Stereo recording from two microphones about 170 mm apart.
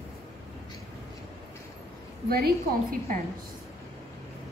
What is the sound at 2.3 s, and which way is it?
Speech, 65° right (ahead or behind).